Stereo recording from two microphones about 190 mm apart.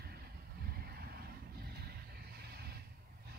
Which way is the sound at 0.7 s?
55° right (ahead or behind).